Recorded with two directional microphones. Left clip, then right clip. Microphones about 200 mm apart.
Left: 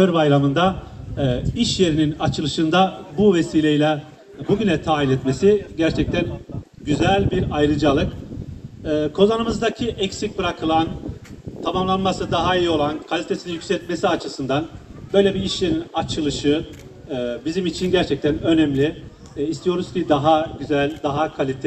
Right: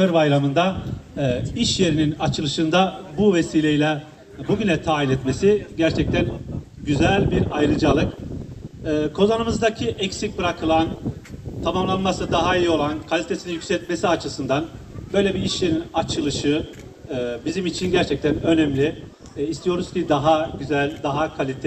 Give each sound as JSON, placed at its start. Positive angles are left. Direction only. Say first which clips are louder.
{"t": 0.0, "sound": "a man's voice", "louder": "left 1 dB", "side_deg": 50}